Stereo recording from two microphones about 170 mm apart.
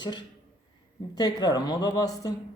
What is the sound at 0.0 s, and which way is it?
A woman's voice, 25° left (ahead or behind).